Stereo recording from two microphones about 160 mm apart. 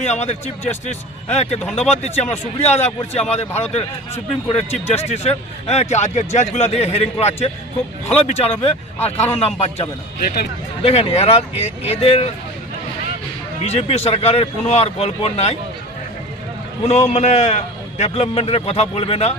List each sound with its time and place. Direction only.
0.0 s a man's voice: 45° left (ahead or behind)
10.2 s speech: 75° left (ahead or behind)
10.8 s a man's voice: 40° left (ahead or behind)
13.7 s a man's voice: 40° left (ahead or behind)
16.8 s a man's voice: 45° left (ahead or behind)